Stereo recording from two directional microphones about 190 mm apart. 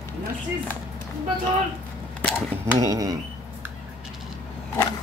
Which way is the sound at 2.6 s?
15° right (ahead or behind).